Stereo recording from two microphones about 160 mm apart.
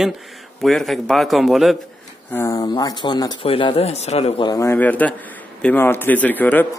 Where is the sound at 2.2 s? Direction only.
20° left (ahead or behind); by 4.3 s 40° left (ahead or behind).